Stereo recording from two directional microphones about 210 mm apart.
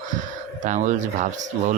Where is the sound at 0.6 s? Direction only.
35° right (ahead or behind).